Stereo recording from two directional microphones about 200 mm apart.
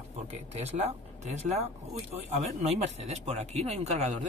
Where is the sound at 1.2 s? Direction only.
35° right (ahead or behind).